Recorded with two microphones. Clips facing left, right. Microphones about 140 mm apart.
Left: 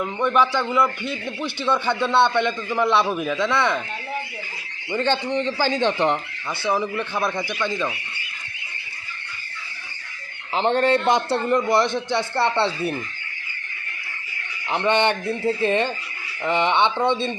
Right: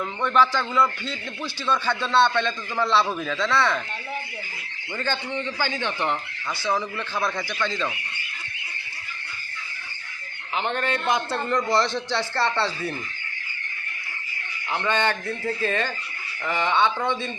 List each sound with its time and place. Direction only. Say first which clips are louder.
0.0 s a man's voice: left 2 dB; 15° left (ahead or behind)
4.9 s a man's voice: left 7 dB; 25° left (ahead or behind)
6.7 s speech: left 4 dB; 15° left (ahead or behind)
10.5 s a man's voice: left 7 dB; 30° left (ahead or behind)
11.4 s a man's voice: left 2 dB; 20° left (ahead or behind)
14.7 s a man's voice: left 4 dB; 20° left (ahead or behind)